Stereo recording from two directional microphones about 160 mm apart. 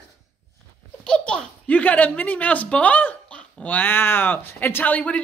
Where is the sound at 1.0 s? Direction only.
5° left (ahead or behind).